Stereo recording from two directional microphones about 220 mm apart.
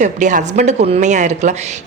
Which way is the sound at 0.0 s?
35° right (ahead or behind).